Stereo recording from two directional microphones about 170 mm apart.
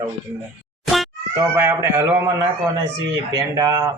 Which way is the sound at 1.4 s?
15° right (ahead or behind).